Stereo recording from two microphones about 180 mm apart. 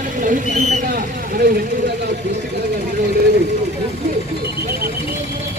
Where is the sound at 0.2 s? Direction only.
45° right (ahead or behind).